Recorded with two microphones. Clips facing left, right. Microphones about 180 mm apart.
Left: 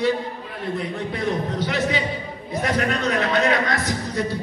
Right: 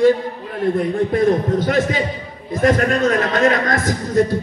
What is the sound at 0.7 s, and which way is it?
A man's voice, 50° right (ahead or behind).